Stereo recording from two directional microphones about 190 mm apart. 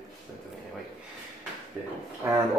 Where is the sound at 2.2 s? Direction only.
15° right (ahead or behind).